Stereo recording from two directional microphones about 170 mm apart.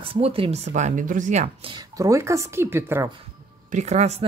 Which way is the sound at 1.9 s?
20° right (ahead or behind).